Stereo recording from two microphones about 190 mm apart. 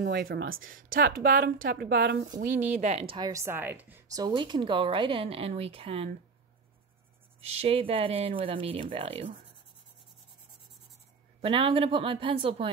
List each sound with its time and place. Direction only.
0.0 s a woman's voice: 60° right (ahead or behind)
1.9 s speech: 65° right (ahead or behind)
2.3 s a woman's voice: 45° right (ahead or behind)
7.4 s a woman's voice: 30° right (ahead or behind)
11.4 s a woman's voice: 30° right (ahead or behind)